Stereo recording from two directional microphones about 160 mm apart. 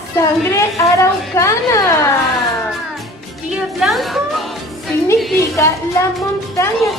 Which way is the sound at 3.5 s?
Centre (ahead or behind).